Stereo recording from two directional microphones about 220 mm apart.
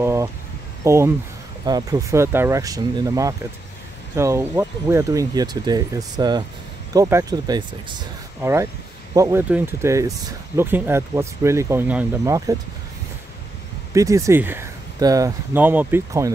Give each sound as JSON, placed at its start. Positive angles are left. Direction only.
{"t": 0.0, "sound": "a sound", "side_deg": -10}
{"t": 0.8, "sound": "speech", "side_deg": -10}
{"t": 13.9, "sound": "speech", "side_deg": -15}